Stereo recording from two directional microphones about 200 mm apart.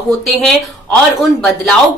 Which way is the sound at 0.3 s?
Centre (ahead or behind).